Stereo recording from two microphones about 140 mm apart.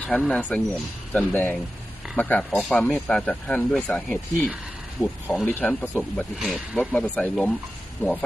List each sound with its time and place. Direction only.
0.0 s speech: 10° left (ahead or behind)
5.5 s speech: 10° left (ahead or behind)